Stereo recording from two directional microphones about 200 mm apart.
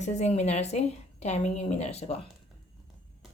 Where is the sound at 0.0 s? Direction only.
35° left (ahead or behind).